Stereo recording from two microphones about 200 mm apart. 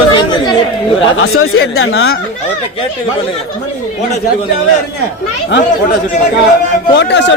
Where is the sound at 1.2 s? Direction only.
90° left.